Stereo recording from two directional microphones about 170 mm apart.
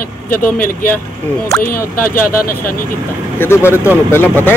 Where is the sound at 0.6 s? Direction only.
55° left (ahead or behind).